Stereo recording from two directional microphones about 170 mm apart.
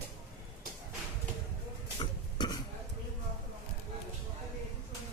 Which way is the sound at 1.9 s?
25° left (ahead or behind).